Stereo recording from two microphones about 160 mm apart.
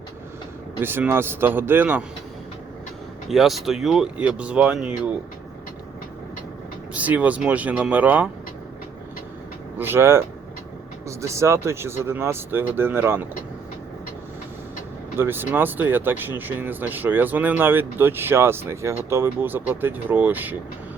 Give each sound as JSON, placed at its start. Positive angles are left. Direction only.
{"t": 0.8, "sound": "speech", "side_deg": -15}
{"t": 3.2, "sound": "speech", "side_deg": 0}
{"t": 6.9, "sound": "speech", "side_deg": -10}
{"t": 9.7, "sound": "speech", "side_deg": -15}
{"t": 15.2, "sound": "speech", "side_deg": -15}